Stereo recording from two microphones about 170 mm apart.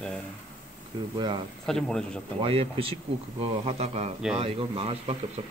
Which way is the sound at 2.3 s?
30° right (ahead or behind).